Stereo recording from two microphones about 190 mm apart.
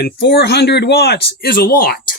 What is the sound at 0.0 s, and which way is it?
Speech, 60° left (ahead or behind).